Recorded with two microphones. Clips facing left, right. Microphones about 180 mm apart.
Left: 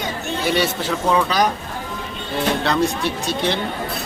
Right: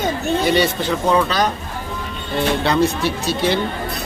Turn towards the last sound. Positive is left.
turn(degrees=-5)  # may be behind; listen again after turning